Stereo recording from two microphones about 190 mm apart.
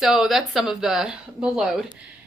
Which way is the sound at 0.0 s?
Centre (ahead or behind).